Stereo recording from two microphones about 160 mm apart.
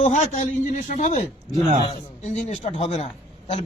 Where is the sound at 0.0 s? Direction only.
45° left (ahead or behind).